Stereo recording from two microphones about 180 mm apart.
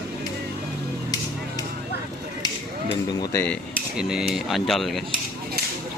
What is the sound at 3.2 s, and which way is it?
Cutlery, 20° left (ahead or behind).